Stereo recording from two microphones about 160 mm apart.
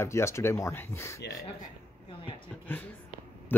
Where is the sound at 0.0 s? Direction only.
15° left (ahead or behind).